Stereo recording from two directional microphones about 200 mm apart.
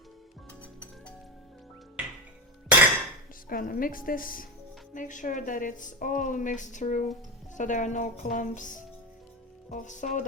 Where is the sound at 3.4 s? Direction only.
45° left (ahead or behind).